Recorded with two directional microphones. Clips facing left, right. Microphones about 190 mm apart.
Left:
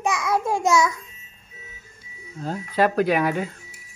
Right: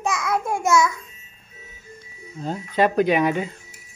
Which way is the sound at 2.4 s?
5° left (ahead or behind).